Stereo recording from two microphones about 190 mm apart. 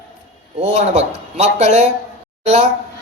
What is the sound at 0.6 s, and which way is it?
A man's voice, 35° right (ahead or behind).